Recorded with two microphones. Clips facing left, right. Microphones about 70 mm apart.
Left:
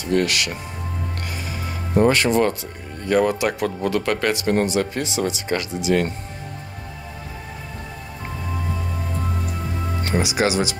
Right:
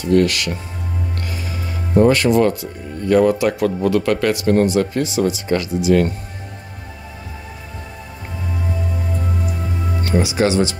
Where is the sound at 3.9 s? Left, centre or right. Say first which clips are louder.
Right 4 dB; left.